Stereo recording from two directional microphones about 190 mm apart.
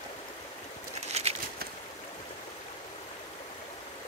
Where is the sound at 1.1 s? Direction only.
35° right (ahead or behind).